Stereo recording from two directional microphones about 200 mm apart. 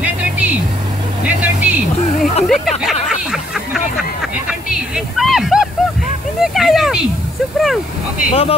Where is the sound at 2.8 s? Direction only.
5° right (ahead or behind).